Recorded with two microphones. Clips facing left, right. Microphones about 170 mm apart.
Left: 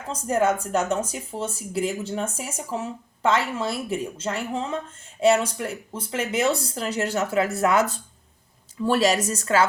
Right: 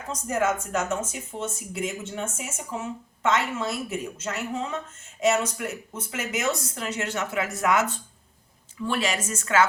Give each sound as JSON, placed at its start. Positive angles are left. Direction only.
{"t": 0.1, "sound": "speech", "side_deg": 30}